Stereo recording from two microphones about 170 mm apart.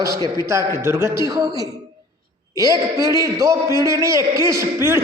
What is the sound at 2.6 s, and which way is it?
A man's voice, 20° right (ahead or behind).